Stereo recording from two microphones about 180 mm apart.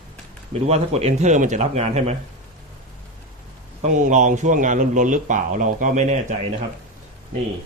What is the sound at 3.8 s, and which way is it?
Speech, 45° right (ahead or behind).